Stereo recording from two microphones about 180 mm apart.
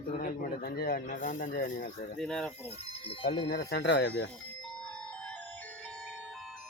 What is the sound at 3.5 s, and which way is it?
Speech, 60° left (ahead or behind).